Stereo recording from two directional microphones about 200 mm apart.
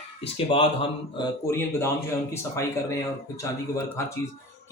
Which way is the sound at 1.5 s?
15° left (ahead or behind).